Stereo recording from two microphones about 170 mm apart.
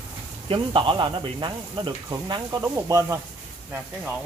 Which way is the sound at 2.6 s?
15° right (ahead or behind).